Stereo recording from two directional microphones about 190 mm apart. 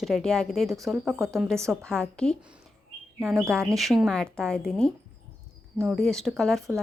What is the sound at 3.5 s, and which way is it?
A woman's voice, centre (ahead or behind).